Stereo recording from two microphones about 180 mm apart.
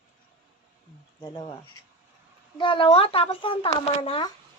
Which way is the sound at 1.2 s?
25° left (ahead or behind).